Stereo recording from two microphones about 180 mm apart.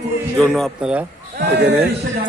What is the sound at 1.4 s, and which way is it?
Speech, 70° right (ahead or behind).